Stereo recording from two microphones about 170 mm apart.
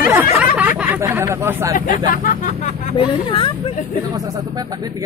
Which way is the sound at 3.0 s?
30° left (ahead or behind).